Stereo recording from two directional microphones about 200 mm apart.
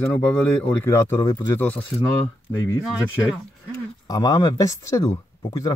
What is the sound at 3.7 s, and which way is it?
Speech, 15° left (ahead or behind).